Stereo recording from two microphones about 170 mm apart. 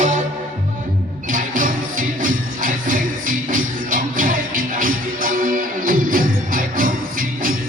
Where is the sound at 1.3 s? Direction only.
50° right (ahead or behind).